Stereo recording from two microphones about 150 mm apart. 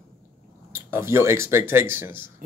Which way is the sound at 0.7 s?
15° right (ahead or behind).